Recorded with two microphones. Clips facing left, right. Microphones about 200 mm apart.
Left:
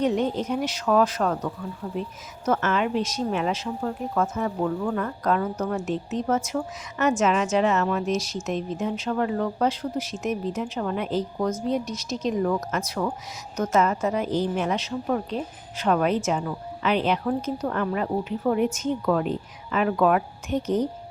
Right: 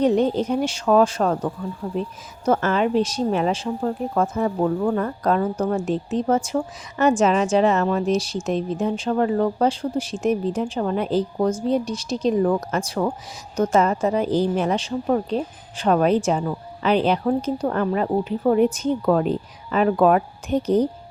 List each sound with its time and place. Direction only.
0.0 s a woman's voice: 35° right (ahead or behind)